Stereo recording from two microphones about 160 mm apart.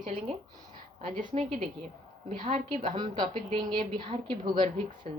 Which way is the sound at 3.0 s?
30° right (ahead or behind).